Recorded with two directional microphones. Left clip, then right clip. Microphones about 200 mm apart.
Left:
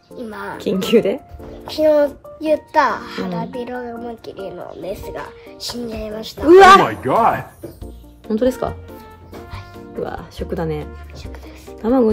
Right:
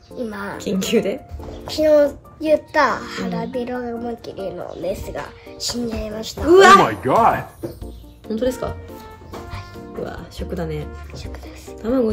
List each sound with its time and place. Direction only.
0.2 s speech: 5° left (ahead or behind)
0.6 s speech: 40° left (ahead or behind)
1.7 s a child's voice: 5° left (ahead or behind)
6.5 s speech: 40° left (ahead or behind)
6.8 s speech: centre (ahead or behind)
8.3 s speech: 35° left (ahead or behind)
10.0 s speech: 35° left (ahead or behind)
11.8 s music: 40° left (ahead or behind)